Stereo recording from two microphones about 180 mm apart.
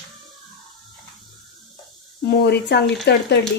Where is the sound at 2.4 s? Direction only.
65° left (ahead or behind).